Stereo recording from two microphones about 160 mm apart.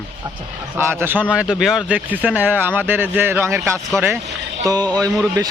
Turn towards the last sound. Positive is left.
turn(degrees=-20)  # may be behind; listen again after turning